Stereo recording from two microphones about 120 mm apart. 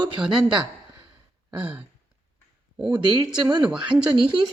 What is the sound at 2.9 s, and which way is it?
Speech, 35° right (ahead or behind).